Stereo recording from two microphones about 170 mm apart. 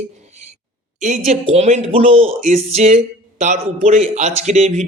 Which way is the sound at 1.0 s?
45° right (ahead or behind).